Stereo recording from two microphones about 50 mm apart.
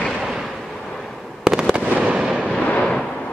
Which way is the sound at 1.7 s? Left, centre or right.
Right.